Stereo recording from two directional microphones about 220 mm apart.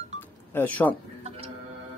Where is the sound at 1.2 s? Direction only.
30° right (ahead or behind).